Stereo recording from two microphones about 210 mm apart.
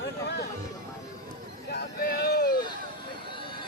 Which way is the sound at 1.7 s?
45° left (ahead or behind).